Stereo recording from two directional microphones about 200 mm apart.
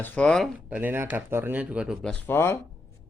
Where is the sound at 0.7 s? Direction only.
10° right (ahead or behind).